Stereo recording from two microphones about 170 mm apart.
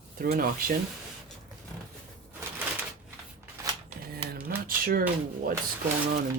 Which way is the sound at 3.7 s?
20° right (ahead or behind).